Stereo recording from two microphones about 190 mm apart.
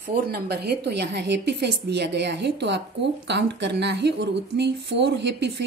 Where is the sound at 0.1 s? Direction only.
60° right (ahead or behind).